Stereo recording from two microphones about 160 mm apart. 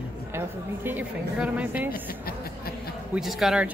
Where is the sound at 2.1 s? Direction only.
70° left (ahead or behind).